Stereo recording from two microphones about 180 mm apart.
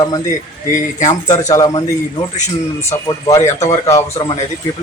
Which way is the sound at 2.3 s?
40° left (ahead or behind).